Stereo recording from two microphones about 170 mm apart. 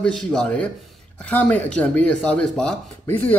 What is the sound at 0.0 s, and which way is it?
Speech, 5° left (ahead or behind).